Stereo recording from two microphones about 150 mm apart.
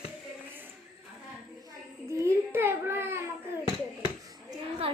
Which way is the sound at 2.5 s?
15° right (ahead or behind).